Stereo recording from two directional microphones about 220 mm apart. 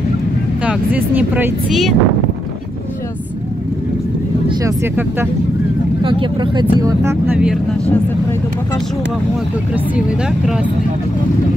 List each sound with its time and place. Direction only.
0.7 s speech: 5° right (ahead or behind)
4.5 s speech: 10° right (ahead or behind)
6.0 s speech: 20° right (ahead or behind)